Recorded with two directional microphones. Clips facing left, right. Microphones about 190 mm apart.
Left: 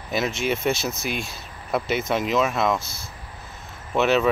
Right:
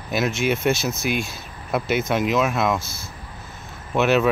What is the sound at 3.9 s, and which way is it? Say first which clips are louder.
Speech: right 1 dB; 5° right (ahead or behind).